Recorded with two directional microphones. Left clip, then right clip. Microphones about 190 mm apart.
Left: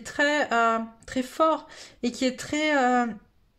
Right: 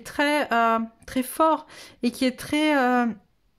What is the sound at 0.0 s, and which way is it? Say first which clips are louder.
Speech: right 1 dB; 20° right (ahead or behind).